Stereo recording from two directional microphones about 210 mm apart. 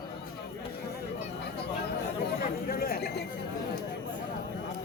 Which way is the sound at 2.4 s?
45° left (ahead or behind).